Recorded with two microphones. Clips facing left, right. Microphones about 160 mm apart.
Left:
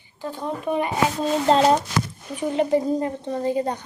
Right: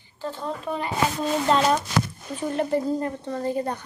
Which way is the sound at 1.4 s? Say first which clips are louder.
Left 4 dB; 30° left (ahead or behind).